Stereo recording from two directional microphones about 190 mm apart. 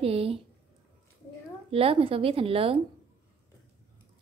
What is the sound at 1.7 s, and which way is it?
Speech, 30° right (ahead or behind).